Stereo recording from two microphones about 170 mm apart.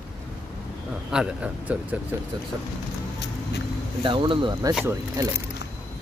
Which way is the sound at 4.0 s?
30° right (ahead or behind).